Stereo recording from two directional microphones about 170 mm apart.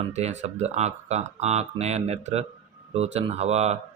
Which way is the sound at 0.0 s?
40° right (ahead or behind).